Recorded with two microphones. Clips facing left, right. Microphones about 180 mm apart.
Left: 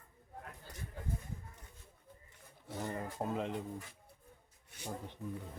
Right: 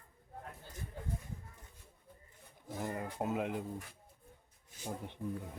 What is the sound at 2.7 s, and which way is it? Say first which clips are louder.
Speech: right 1 dB; centre (ahead or behind).